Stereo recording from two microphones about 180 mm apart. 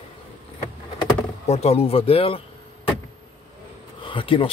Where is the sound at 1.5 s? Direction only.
35° left (ahead or behind).